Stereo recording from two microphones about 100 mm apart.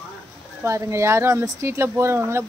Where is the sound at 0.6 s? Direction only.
30° right (ahead or behind).